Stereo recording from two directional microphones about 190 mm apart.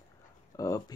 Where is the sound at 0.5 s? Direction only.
20° left (ahead or behind).